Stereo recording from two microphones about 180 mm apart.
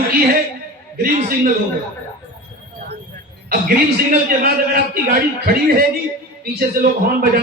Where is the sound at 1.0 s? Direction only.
50° right (ahead or behind).